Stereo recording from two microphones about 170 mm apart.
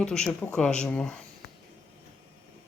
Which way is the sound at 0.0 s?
5° left (ahead or behind).